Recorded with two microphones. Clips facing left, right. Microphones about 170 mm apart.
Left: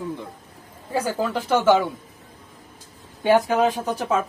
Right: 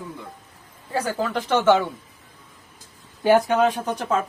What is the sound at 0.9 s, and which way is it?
Speech, 10° left (ahead or behind).